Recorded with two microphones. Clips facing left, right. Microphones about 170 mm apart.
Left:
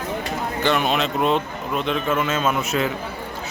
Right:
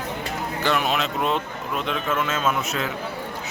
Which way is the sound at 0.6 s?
5° right (ahead or behind).